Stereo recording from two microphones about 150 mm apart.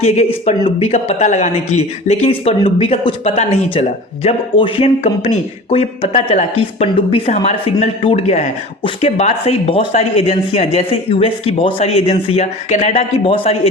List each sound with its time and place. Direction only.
0.4 s a woman's voice: 45° left (ahead or behind)